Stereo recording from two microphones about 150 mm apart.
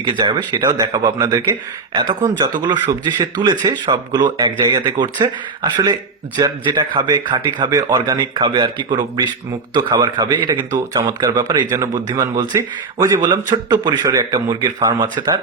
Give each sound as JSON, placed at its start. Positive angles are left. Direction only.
{"t": 0.0, "sound": "a man's voice", "side_deg": -30}